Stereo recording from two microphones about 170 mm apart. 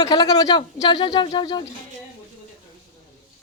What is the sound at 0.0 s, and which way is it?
Speech, 25° left (ahead or behind).